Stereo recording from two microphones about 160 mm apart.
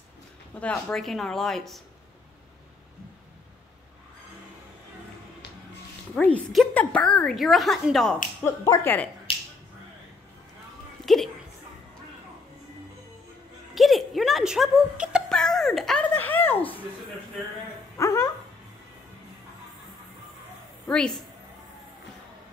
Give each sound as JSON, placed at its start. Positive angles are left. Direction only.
{"t": 0.6, "sound": "a woman's voice", "side_deg": 10}
{"t": 6.1, "sound": "a woman's voice", "side_deg": 5}
{"t": 8.5, "sound": "speech", "side_deg": 20}
{"t": 13.7, "sound": "a sound", "side_deg": 0}
{"t": 17.9, "sound": "dog", "side_deg": 20}
{"t": 20.9, "sound": "a woman's voice", "side_deg": 5}